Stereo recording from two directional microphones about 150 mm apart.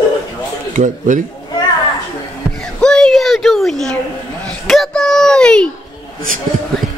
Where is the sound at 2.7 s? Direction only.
5° left (ahead or behind).